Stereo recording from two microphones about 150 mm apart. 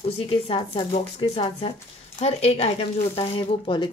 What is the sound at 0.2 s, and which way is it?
Speech, 35° left (ahead or behind).